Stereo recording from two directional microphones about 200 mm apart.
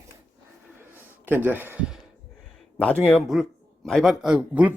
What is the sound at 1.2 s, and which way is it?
Speech, 10° right (ahead or behind).